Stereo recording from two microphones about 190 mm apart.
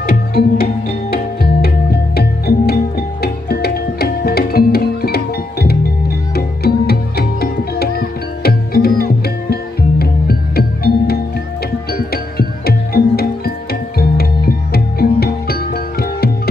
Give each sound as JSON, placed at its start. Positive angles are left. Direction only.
{"t": 0.0, "sound": "music", "side_deg": 55}